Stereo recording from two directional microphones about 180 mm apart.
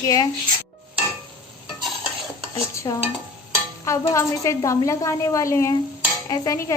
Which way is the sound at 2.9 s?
20° left (ahead or behind).